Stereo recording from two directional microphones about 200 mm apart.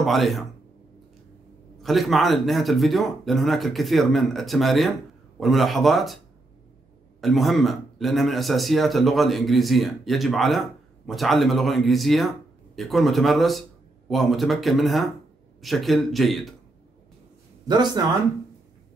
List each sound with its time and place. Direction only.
0.0 s a man's voice: centre (ahead or behind)
1.8 s a man's voice: centre (ahead or behind)
7.2 s a man's voice: centre (ahead or behind)
17.6 s speech: 20° right (ahead or behind)